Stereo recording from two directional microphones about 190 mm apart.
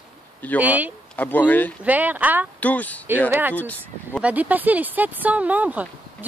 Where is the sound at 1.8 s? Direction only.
10° right (ahead or behind).